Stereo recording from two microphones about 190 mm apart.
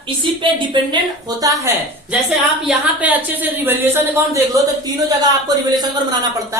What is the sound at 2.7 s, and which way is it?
Speech, 5° right (ahead or behind).